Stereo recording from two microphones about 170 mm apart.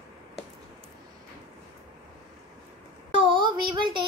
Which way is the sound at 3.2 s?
30° right (ahead or behind).